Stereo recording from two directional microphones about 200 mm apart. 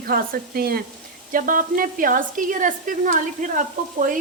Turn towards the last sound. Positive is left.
turn(degrees=-40)  # may be behind; listen again after turning